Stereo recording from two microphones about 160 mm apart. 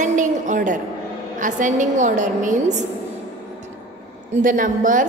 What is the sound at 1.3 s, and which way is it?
A woman's voice, 50° right (ahead or behind).